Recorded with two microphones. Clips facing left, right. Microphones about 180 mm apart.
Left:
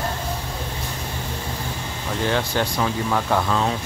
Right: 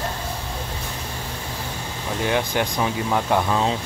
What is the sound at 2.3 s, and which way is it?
Speech, 15° right (ahead or behind).